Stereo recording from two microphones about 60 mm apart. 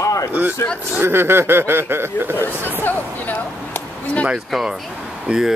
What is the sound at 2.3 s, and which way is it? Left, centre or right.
Speech, left.